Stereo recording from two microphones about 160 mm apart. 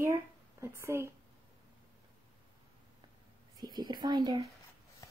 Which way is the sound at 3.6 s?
25° right (ahead or behind).